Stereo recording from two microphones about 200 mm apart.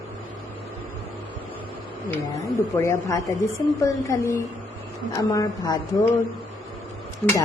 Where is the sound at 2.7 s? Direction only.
15° left (ahead or behind).